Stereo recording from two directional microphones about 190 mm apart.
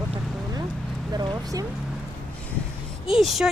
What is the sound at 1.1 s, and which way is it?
Speech, 20° right (ahead or behind).